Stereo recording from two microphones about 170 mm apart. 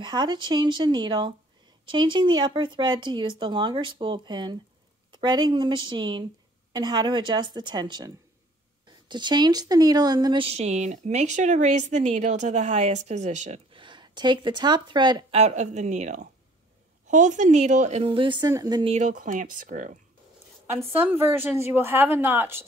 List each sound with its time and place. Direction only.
0.0 s speech: 25° right (ahead or behind); by 13.6 s 45° right (ahead or behind)
13.7 s speech: 30° right (ahead or behind)
15.3 s speech: 45° right (ahead or behind); by 18.9 s 25° right (ahead or behind)
18.9 s speech: 50° right (ahead or behind)
20.6 s a woman's voice: 10° right (ahead or behind)